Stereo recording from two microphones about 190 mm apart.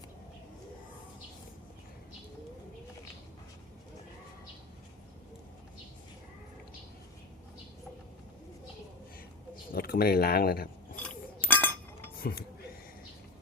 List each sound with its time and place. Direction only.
9.7 s speech: 50° left (ahead or behind)
11.4 s chink: 10° left (ahead or behind)
12.2 s speech: 50° left (ahead or behind)